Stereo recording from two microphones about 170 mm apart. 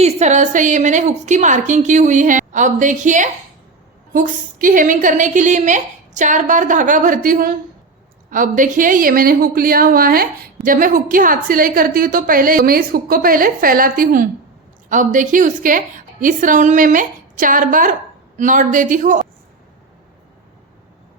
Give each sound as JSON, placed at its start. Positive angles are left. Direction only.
{"t": 0.0, "sound": "a woman's voice", "side_deg": -40}